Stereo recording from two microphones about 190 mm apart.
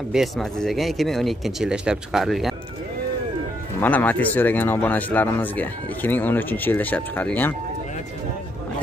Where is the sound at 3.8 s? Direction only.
10° left (ahead or behind).